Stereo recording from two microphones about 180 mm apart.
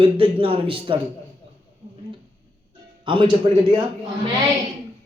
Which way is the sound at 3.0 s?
25° right (ahead or behind).